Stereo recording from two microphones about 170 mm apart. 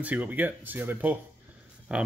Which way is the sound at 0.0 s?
10° right (ahead or behind).